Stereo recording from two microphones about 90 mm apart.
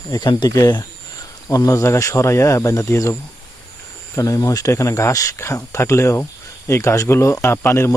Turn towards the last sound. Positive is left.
turn(degrees=25)  # may be behind; listen again after turning